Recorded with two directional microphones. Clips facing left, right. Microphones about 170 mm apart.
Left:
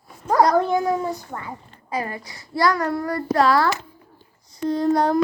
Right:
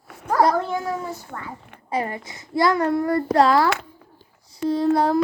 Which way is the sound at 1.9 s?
25° right (ahead or behind).